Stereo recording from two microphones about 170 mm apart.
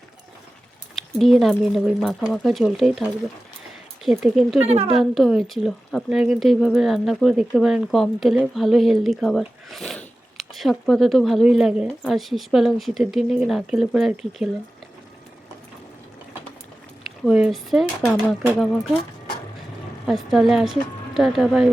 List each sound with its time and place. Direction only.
1.2 s speech: centre (ahead or behind)
4.2 s speech: centre (ahead or behind)
4.6 s a woman's voice: 40° right (ahead or behind)
4.9 s speech: centre (ahead or behind)
17.2 s speech: 5° right (ahead or behind)
20.1 s speech: centre (ahead or behind)